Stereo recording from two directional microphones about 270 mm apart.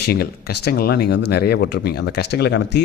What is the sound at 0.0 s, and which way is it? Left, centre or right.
Speech, left.